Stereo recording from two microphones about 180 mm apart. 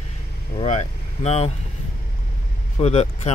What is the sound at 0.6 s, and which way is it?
Speech, 35° left (ahead or behind).